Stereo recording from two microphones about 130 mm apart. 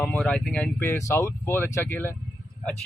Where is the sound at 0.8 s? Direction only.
20° left (ahead or behind).